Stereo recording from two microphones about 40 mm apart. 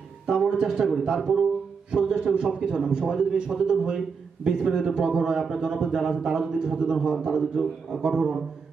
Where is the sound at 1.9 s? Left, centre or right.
Right.